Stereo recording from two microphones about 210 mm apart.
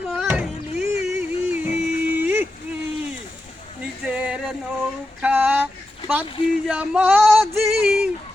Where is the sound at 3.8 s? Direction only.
5° right (ahead or behind).